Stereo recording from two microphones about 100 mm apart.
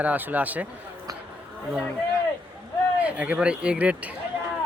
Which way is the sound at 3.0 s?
15° right (ahead or behind).